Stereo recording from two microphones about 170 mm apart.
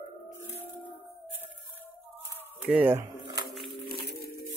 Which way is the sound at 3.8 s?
70° left (ahead or behind).